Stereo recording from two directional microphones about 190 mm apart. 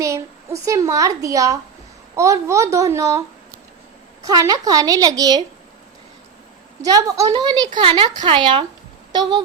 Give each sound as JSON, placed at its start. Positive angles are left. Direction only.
{"t": 0.0, "sound": "a woman's voice", "side_deg": -15}
{"t": 6.8, "sound": "a woman's voice", "side_deg": -20}
{"t": 8.1, "sound": "a woman's voice", "side_deg": -40}
{"t": 8.4, "sound": "a woman's voice", "side_deg": -25}